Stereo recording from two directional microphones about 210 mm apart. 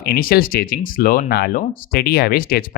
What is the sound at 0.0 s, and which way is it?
Speech, 45° left (ahead or behind).